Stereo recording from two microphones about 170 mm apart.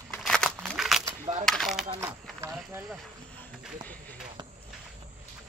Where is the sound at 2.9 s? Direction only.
5° left (ahead or behind).